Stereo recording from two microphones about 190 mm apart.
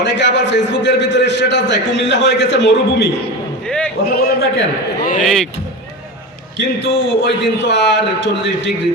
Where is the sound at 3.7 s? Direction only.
5° left (ahead or behind).